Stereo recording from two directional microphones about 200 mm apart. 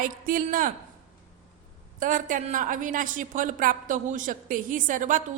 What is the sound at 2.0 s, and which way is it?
A man's voice, 40° right (ahead or behind).